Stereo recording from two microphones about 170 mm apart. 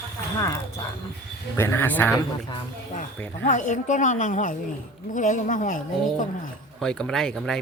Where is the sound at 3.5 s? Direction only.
45° left (ahead or behind).